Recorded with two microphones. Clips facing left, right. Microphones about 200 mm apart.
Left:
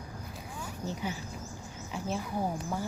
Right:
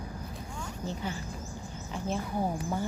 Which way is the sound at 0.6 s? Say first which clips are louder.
Even; 10° left (ahead or behind).